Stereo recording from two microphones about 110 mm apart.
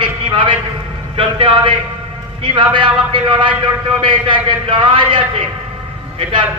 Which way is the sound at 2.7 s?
50° right (ahead or behind).